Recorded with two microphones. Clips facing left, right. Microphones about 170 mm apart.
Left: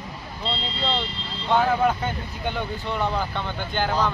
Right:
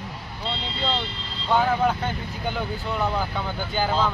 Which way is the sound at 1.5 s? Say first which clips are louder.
Left 1 dB; centre (ahead or behind).